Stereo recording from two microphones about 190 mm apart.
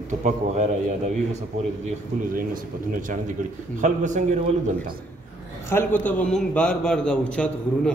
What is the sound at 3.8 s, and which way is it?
Speech, 40° right (ahead or behind).